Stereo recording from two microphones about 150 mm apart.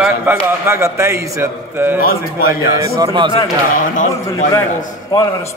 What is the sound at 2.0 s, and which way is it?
Speech, 85° left.